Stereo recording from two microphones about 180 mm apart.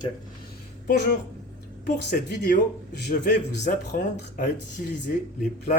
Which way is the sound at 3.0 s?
45° left (ahead or behind).